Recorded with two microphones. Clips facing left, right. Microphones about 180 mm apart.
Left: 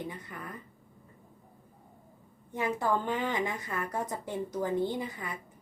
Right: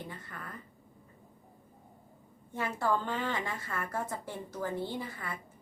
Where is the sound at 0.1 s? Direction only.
20° left (ahead or behind).